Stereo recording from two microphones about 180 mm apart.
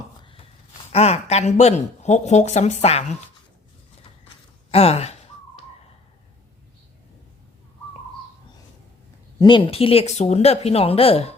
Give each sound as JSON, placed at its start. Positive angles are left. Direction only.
{"t": 0.2, "sound": "a sound", "side_deg": 30}
{"t": 0.9, "sound": "speech", "side_deg": 35}
{"t": 4.7, "sound": "speech", "side_deg": 35}
{"t": 9.4, "sound": "speech", "side_deg": 25}